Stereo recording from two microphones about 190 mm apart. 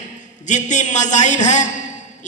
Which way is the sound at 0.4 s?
40° left (ahead or behind).